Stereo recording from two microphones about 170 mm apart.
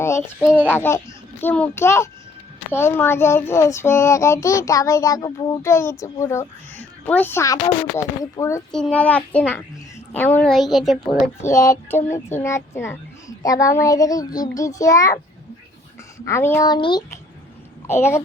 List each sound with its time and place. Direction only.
0.0 s a child's voice: 10° left (ahead or behind)
0.4 s a child's voice: 10° right (ahead or behind)
0.7 s child singing: 15° left (ahead or behind)
8.7 s child singing: 5° left (ahead or behind)
10.2 s a woman's voice: 10° left (ahead or behind)
11.4 s speech: 20° left (ahead or behind)
16.2 s speech: 15° left (ahead or behind)
17.8 s child singing: 15° left (ahead or behind)